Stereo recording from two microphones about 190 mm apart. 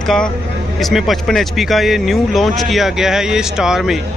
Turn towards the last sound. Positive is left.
turn(degrees=0)  # may be behind; listen again after turning